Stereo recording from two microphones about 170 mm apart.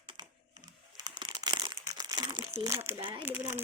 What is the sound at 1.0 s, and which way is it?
Crumpling, 25° right (ahead or behind).